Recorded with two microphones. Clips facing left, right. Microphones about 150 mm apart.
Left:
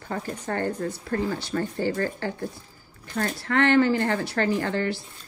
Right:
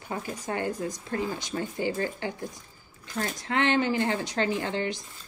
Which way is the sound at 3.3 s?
20° right (ahead or behind).